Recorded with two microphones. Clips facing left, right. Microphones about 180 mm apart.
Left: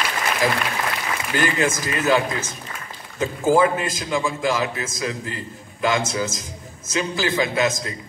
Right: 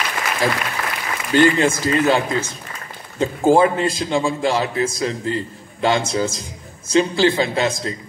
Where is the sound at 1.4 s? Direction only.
30° right (ahead or behind).